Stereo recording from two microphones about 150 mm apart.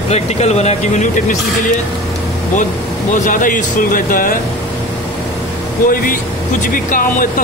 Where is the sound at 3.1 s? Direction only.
60° left (ahead or behind).